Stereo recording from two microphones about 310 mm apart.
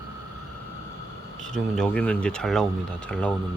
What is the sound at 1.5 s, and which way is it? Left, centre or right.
Speech, centre.